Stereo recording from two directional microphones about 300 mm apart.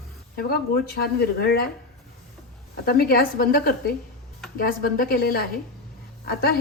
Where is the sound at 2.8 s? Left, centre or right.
Left.